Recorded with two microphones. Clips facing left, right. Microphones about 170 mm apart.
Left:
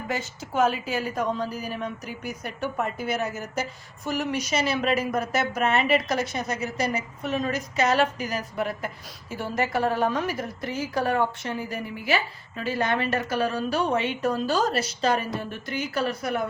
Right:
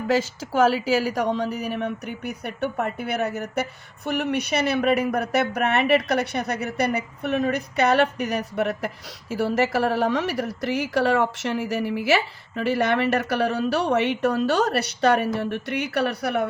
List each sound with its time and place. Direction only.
0.1 s a woman's voice: 90° right; by 16.5 s 70° right (ahead or behind)